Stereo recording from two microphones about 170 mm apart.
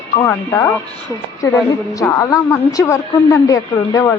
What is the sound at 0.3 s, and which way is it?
Speech, 15° left (ahead or behind).